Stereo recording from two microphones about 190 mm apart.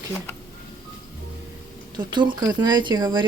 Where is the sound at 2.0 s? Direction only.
25° right (ahead or behind).